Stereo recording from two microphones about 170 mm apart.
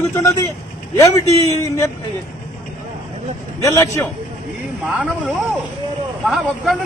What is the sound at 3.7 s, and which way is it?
Speech, 20° left (ahead or behind).